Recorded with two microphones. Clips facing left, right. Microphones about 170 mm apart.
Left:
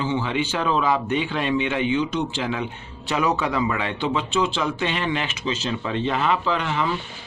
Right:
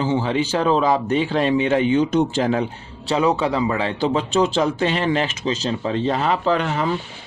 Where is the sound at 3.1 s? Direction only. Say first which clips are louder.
Right 4 dB; 30° right (ahead or behind).